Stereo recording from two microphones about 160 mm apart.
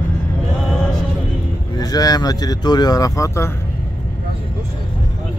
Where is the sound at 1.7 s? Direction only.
25° left (ahead or behind).